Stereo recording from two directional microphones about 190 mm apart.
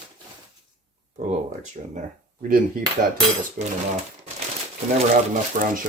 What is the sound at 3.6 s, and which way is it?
Speech, 45° right (ahead or behind).